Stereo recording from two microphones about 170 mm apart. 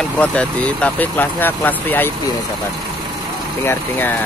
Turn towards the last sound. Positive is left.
turn(degrees=10)  # may be behind; listen again after turning